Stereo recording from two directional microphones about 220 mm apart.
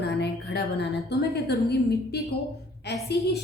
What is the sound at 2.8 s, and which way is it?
Speech, 45° left (ahead or behind).